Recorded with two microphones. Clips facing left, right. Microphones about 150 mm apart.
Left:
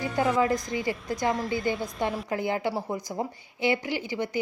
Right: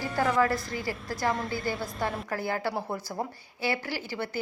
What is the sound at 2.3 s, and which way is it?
A woman's voice, 20° left (ahead or behind).